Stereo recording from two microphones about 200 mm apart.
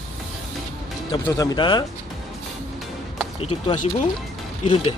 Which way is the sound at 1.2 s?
20° left (ahead or behind).